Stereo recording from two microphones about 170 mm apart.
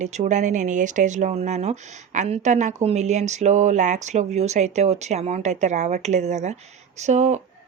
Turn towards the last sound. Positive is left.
turn(degrees=-45)  # may be behind; listen again after turning